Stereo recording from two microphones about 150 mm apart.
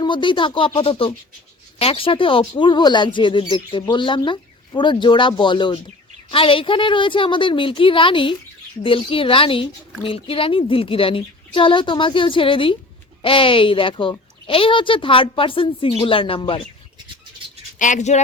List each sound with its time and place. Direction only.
0.0 s speech: 35° left (ahead or behind)
17.7 s speech: 55° left (ahead or behind)